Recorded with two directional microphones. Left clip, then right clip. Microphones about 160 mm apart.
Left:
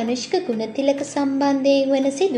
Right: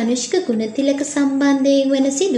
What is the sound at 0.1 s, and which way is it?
A woman's voice, 20° left (ahead or behind).